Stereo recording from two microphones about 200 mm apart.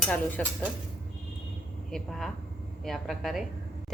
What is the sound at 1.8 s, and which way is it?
A woman's voice, centre (ahead or behind).